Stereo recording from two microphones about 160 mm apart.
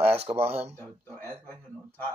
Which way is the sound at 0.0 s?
40° right (ahead or behind).